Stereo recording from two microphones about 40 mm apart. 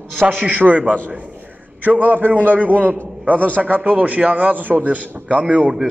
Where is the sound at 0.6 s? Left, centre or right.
Right.